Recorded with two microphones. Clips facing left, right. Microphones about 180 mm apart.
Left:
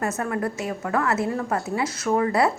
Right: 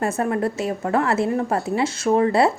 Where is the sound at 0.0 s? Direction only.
30° right (ahead or behind).